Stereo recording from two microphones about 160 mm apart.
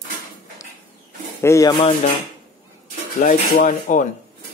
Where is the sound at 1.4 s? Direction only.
20° left (ahead or behind).